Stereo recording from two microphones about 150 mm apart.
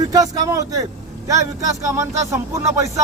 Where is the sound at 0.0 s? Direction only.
25° right (ahead or behind).